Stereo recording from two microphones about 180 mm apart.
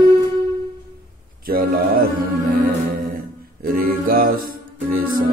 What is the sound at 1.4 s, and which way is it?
Music, 55° right (ahead or behind).